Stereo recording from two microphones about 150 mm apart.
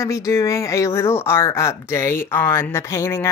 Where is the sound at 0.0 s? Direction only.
20° left (ahead or behind).